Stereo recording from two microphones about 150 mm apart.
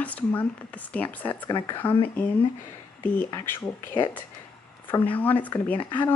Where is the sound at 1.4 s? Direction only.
35° left (ahead or behind).